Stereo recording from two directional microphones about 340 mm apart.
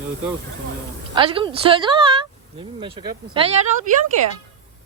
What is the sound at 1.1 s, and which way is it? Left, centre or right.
A woman's voice, centre.